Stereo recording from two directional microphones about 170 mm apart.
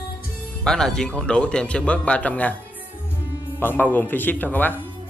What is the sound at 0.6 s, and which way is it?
Speech, 5° left (ahead or behind).